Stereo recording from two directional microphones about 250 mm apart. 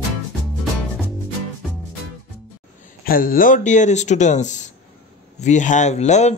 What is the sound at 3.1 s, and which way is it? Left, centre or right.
Speech, left.